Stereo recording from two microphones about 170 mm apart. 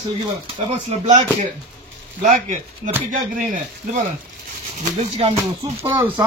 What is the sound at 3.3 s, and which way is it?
Speech, 50° right (ahead or behind).